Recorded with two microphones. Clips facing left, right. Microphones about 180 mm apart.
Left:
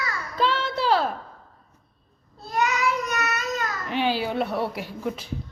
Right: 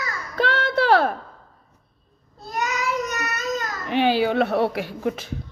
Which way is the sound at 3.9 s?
65° right (ahead or behind).